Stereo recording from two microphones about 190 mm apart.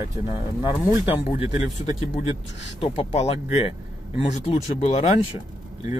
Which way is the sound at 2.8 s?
35° left (ahead or behind).